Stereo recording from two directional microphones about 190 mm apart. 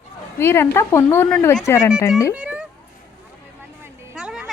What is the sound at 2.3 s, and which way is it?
Cat, 5° right (ahead or behind).